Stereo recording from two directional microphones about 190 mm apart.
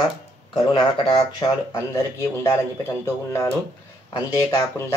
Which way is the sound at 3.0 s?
15° left (ahead or behind).